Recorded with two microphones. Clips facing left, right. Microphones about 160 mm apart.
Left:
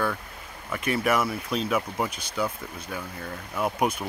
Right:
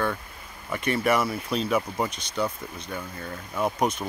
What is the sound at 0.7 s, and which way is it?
Speech, 5° left (ahead or behind).